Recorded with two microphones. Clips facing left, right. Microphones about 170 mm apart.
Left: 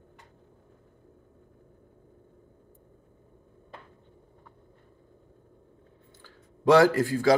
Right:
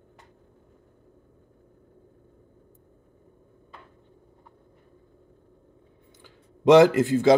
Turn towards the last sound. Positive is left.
turn(degrees=-20)  # may be behind; listen again after turning